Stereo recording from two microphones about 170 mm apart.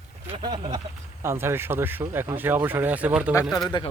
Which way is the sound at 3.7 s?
30° left (ahead or behind).